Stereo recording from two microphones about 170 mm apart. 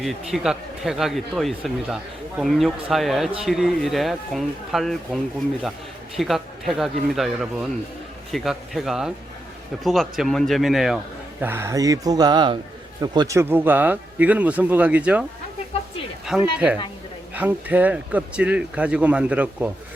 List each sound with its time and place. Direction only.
0.0 s a man's voice: centre (ahead or behind)
11.4 s speech: 15° right (ahead or behind)
16.2 s a sound: 5° right (ahead or behind)
17.3 s speech: 10° right (ahead or behind)